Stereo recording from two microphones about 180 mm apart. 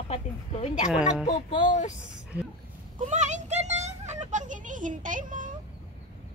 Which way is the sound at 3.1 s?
40° right (ahead or behind).